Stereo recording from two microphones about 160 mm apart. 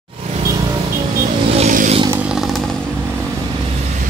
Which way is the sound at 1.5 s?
50° right (ahead or behind).